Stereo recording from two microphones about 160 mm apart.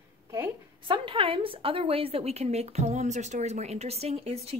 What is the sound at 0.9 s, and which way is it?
A woman's voice, 35° right (ahead or behind).